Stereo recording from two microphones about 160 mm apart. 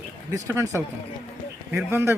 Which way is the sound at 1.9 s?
15° right (ahead or behind).